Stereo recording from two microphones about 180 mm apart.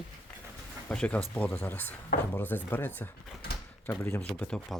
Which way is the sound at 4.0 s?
15° left (ahead or behind).